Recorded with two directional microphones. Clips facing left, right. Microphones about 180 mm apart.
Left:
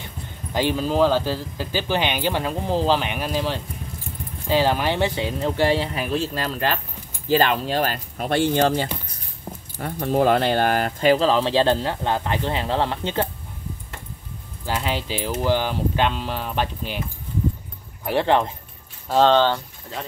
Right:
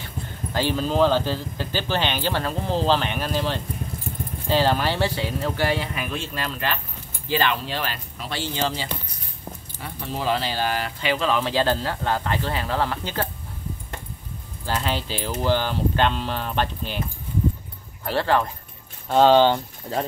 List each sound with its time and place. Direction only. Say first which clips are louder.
0.5 s speech: left 2 dB; 15° left (ahead or behind)
14.7 s speech: left 1 dB; 10° left (ahead or behind)
18.0 s speech: left 2 dB; 20° left (ahead or behind)
19.0 s speech: right 1 dB; centre (ahead or behind)
19.3 s speech: right 2 dB; 15° right (ahead or behind)